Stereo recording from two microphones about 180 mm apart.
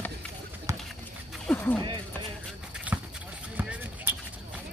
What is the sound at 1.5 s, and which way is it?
Music, 10° left (ahead or behind).